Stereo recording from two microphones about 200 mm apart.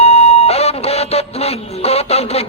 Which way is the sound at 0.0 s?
30° left (ahead or behind).